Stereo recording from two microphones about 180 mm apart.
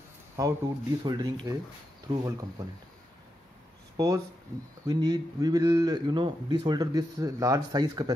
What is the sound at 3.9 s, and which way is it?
A man's voice, 20° right (ahead or behind).